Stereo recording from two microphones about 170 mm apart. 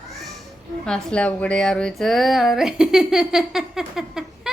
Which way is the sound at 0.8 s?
5° left (ahead or behind).